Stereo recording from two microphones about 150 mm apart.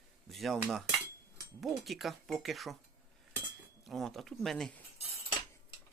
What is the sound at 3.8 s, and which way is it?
Speech, centre (ahead or behind).